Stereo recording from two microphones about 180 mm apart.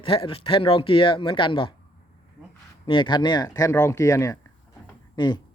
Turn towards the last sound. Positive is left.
turn(degrees=25)  # may be behind; listen again after turning